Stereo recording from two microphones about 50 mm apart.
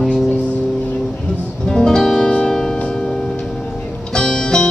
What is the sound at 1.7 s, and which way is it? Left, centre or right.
Music, centre.